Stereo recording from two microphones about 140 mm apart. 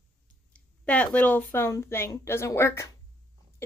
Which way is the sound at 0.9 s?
10° left (ahead or behind).